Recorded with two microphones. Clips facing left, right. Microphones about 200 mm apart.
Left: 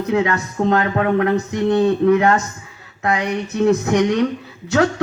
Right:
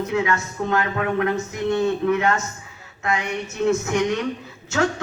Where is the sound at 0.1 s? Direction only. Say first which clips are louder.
Left 4 dB; 35° left (ahead or behind).